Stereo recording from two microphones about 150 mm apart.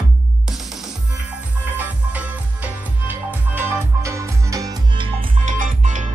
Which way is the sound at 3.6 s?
20° right (ahead or behind).